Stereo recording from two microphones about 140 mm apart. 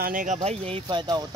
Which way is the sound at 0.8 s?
30° right (ahead or behind).